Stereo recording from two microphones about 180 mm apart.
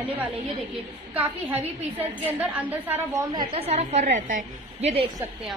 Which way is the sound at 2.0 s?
10° right (ahead or behind).